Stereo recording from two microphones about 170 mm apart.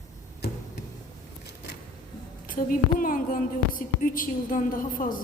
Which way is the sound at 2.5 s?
55° left (ahead or behind).